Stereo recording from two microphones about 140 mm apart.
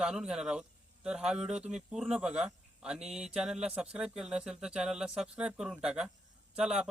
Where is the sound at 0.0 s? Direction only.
5° right (ahead or behind).